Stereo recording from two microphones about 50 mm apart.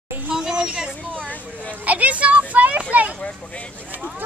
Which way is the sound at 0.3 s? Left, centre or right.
Centre.